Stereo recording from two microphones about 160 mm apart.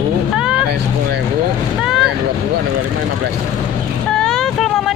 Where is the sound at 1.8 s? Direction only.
Centre (ahead or behind).